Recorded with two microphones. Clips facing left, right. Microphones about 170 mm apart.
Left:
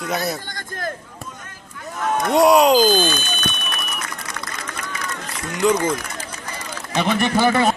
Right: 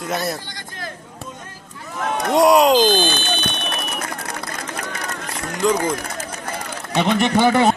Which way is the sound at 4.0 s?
55° right (ahead or behind).